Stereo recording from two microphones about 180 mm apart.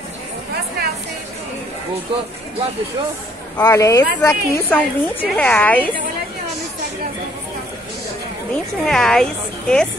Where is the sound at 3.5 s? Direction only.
15° left (ahead or behind).